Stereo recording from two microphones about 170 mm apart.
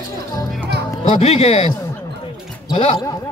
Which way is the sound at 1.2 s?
40° left (ahead or behind).